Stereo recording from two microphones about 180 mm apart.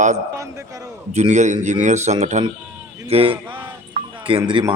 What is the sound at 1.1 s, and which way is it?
Speech, 40° right (ahead or behind).